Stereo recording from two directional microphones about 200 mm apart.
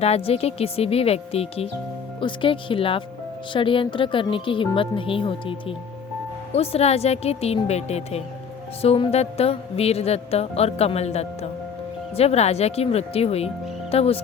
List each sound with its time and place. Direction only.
0.0 s speech: 30° left (ahead or behind)
6.5 s music: 30° left (ahead or behind)
13.9 s speech: 30° left (ahead or behind)